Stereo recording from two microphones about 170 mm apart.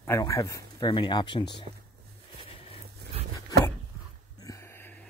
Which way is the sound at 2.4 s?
30° left (ahead or behind).